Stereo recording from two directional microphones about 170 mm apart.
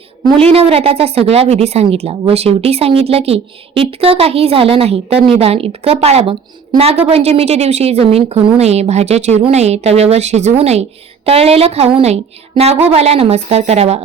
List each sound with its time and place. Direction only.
0.3 s speech: 35° right (ahead or behind)